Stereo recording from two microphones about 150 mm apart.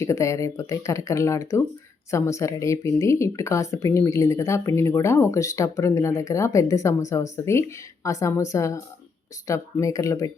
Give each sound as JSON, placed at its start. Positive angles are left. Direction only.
{"t": 0.0, "sound": "speech", "side_deg": 20}